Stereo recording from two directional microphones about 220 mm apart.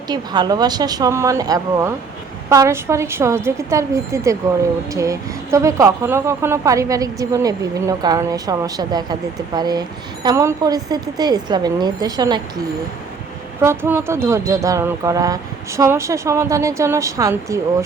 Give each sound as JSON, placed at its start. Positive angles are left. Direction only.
{"t": 0.1, "sound": "a woman's voice", "side_deg": -20}
{"t": 13.6, "sound": "a woman's voice", "side_deg": -10}